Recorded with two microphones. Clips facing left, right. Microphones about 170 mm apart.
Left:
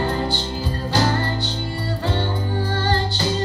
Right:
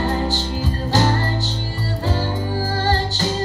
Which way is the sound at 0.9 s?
40° right (ahead or behind).